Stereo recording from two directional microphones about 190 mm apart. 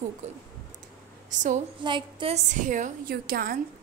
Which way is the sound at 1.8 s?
25° right (ahead or behind).